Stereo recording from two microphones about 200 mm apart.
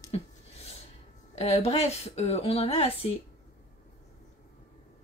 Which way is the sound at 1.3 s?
30° left (ahead or behind).